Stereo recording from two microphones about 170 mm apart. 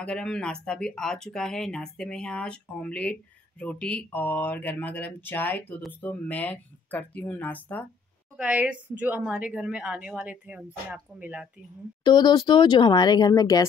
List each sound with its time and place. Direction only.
0.0 s speech: 5° left (ahead or behind)
8.4 s a woman's voice: 10° right (ahead or behind)
12.0 s speech: 25° left (ahead or behind)